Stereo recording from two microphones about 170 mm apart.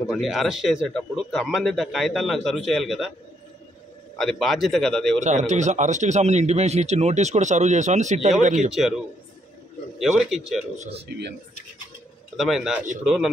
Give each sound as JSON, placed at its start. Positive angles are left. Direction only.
{"t": 0.1, "sound": "a man's voice", "side_deg": 0}
{"t": 4.2, "sound": "a man's voice", "side_deg": 0}
{"t": 5.2, "sound": "a man's voice", "side_deg": -45}
{"t": 8.5, "sound": "a man's voice", "side_deg": 0}
{"t": 10.8, "sound": "speech", "side_deg": -35}
{"t": 11.1, "sound": "speech", "side_deg": -85}
{"t": 12.4, "sound": "a man's voice", "side_deg": 0}